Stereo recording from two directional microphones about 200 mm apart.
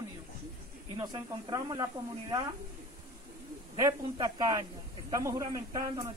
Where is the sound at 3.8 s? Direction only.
15° right (ahead or behind).